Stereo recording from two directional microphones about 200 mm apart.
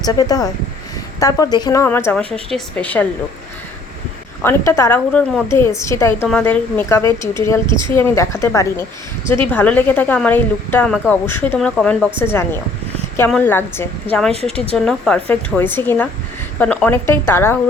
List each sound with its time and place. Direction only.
0.0 s speech: 20° left (ahead or behind)
4.4 s speech: 15° left (ahead or behind)
7.7 s a woman's voice: 20° right (ahead or behind)
7.9 s speech: 15° left (ahead or behind)
14.5 s a woman's voice: 30° right (ahead or behind)
14.8 s speech: 5° left (ahead or behind)